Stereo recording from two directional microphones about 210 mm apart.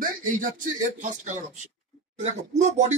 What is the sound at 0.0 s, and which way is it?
Speech, 40° right (ahead or behind).